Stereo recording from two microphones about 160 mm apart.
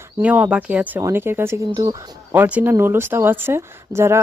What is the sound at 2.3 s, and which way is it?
Speech, 10° right (ahead or behind).